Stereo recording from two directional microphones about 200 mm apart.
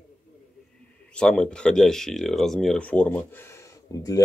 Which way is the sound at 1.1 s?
5° left (ahead or behind).